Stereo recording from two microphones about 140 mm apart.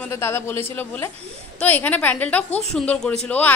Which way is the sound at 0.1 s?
20° left (ahead or behind).